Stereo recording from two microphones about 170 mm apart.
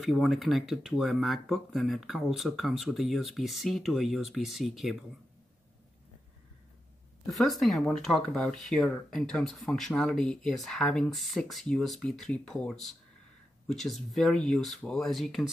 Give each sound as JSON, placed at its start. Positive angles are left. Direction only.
{"t": 0.0, "sound": "speech", "side_deg": 0}
{"t": 7.2, "sound": "speech", "side_deg": 0}